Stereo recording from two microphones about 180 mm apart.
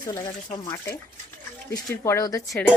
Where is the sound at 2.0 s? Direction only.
15° left (ahead or behind).